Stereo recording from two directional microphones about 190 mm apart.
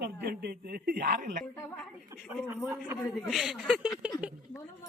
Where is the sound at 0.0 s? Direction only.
60° right (ahead or behind).